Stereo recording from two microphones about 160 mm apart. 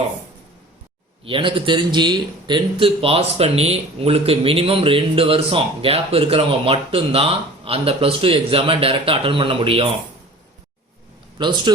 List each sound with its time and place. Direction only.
1.2 s a man's voice: 35° right (ahead or behind)
11.3 s a man's voice: 30° right (ahead or behind)